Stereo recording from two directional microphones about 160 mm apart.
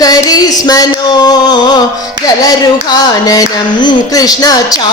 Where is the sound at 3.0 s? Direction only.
25° left (ahead or behind).